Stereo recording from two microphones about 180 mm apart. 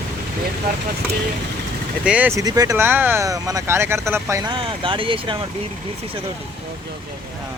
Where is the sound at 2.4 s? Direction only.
20° right (ahead or behind).